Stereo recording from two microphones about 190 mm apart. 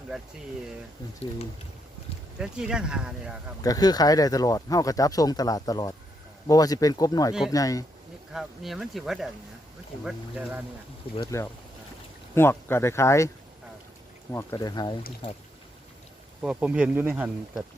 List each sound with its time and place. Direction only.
2.4 s speech: 5° right (ahead or behind)
3.6 s speech: 20° left (ahead or behind)
8.3 s speech: centre (ahead or behind)
11.2 s speech: 15° left (ahead or behind)
14.3 s speech: 20° left (ahead or behind)
16.4 s speech: 5° right (ahead or behind)